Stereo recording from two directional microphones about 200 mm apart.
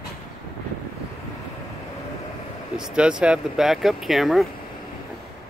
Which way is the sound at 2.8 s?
5° right (ahead or behind).